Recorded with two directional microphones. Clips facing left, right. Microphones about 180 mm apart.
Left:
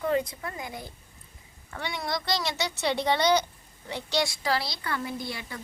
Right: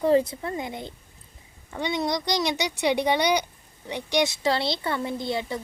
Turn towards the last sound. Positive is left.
turn(degrees=-25)  # may be behind; listen again after turning